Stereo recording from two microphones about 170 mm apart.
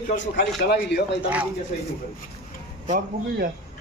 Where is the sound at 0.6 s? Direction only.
75° left (ahead or behind).